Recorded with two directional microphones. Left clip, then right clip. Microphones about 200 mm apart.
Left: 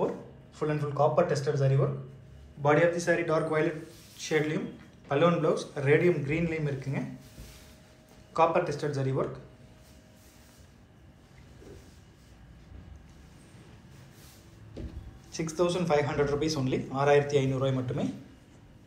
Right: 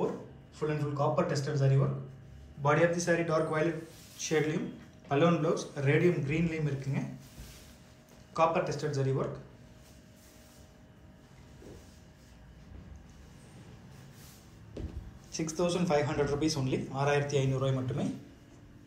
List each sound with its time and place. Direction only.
0.6 s a man's voice: 5° right (ahead or behind)
8.3 s a man's voice: 10° right (ahead or behind)
15.3 s a man's voice: 15° right (ahead or behind)